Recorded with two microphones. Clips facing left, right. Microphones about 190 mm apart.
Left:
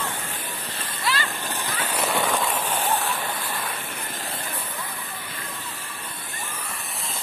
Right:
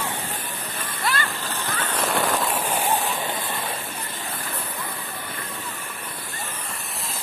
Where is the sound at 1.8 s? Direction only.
10° left (ahead or behind); by 3.2 s 15° right (ahead or behind).